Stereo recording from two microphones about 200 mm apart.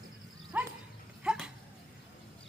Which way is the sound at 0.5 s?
10° right (ahead or behind).